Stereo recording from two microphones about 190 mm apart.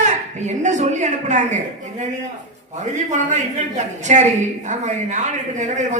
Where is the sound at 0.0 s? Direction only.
40° right (ahead or behind).